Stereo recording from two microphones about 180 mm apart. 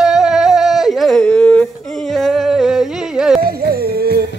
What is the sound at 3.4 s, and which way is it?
Music, 55° right (ahead or behind).